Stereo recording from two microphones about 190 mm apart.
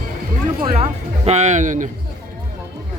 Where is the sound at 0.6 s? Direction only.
30° right (ahead or behind).